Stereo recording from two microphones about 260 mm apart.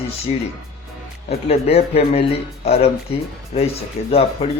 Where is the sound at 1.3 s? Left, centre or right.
Left.